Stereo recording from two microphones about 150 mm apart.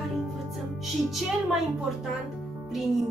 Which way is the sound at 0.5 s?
Centre (ahead or behind).